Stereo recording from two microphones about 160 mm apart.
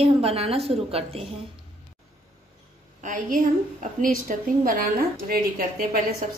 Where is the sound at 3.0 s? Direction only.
55° right (ahead or behind).